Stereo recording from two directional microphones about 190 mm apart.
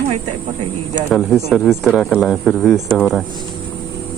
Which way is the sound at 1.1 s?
Centre (ahead or behind).